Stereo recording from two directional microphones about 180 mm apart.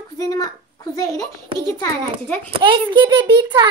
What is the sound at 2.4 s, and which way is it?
A child's voice, 30° right (ahead or behind).